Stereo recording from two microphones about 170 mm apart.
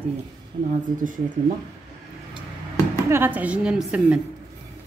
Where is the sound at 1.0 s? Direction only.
50° right (ahead or behind).